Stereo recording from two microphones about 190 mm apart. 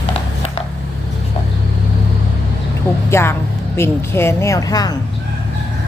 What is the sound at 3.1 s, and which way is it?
Speech, 15° left (ahead or behind).